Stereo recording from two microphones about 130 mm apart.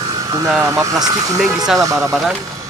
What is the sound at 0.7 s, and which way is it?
Speech, 25° right (ahead or behind).